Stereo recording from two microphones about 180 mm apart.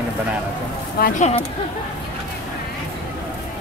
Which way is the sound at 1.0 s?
50° left (ahead or behind).